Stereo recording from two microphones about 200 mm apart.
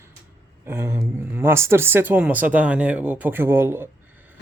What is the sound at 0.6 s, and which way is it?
Speech, 15° right (ahead or behind).